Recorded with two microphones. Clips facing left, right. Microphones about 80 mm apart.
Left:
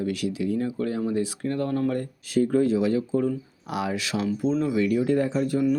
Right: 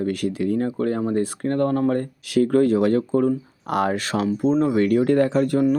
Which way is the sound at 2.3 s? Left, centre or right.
Right.